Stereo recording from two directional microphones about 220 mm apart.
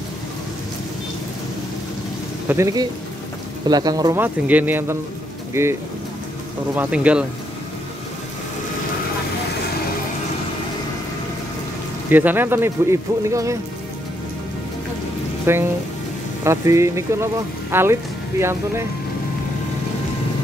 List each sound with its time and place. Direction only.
2.4 s speech: 15° right (ahead or behind)
12.1 s speech: 10° right (ahead or behind)
15.5 s speech: 10° right (ahead or behind)